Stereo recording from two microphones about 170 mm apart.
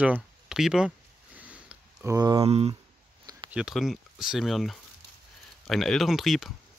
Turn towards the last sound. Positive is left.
turn(degrees=0)  # may be behind; listen again after turning